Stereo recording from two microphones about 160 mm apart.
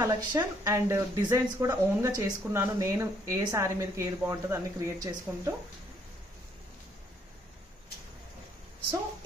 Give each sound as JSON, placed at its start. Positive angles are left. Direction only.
{"t": 0.0, "sound": "a woman's voice", "side_deg": -25}